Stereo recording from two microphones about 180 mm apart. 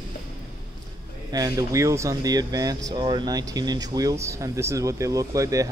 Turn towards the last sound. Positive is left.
turn(degrees=-20)  # may be behind; listen again after turning